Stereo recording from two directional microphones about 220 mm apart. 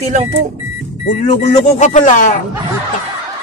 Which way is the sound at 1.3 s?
30° left (ahead or behind).